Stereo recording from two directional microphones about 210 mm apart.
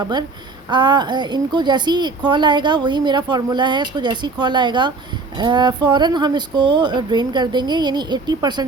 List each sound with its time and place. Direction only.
0.0 s a woman's voice: 20° right (ahead or behind)